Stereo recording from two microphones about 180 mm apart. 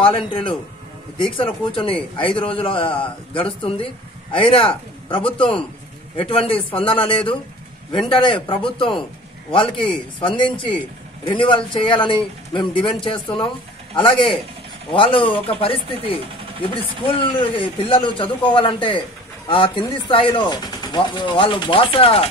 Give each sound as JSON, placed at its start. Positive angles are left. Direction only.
{"t": 0.0, "sound": "a man's voice", "side_deg": 30}